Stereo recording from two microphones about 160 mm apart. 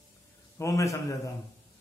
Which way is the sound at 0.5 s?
20° left (ahead or behind).